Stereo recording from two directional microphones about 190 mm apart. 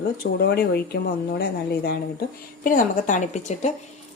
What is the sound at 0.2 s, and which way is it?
A woman's voice, 55° left (ahead or behind).